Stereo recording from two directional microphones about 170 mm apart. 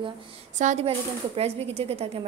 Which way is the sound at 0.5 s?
45° right (ahead or behind).